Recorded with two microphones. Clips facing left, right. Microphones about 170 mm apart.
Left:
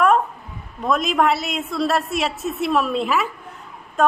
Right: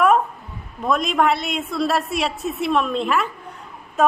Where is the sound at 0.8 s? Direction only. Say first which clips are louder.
Even; centre (ahead or behind).